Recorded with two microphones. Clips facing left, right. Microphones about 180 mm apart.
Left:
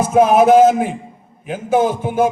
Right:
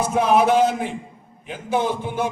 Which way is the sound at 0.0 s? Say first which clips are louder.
Left 6 dB; 45° left (ahead or behind).